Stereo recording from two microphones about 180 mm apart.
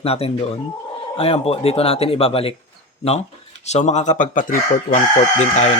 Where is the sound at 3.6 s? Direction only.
40° left (ahead or behind).